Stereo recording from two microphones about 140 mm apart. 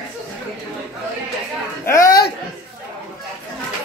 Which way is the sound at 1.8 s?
20° left (ahead or behind).